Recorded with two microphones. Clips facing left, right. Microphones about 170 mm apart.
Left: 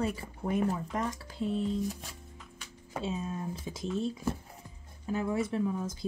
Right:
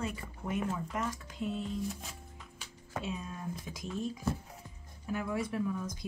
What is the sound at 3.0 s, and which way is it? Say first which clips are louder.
Speech: left 6 dB; 25° left (ahead or behind).